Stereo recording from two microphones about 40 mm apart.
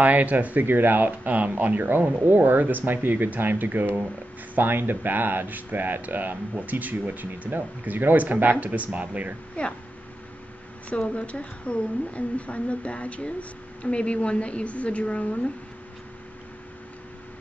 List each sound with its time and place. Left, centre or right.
0.0 s speech: right
0.7 s speech: right
9.6 s a woman's voice: left
10.9 s a woman's voice: left